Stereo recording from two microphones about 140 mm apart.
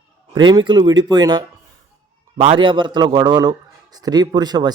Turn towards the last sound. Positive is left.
turn(degrees=-30)  # may be behind; listen again after turning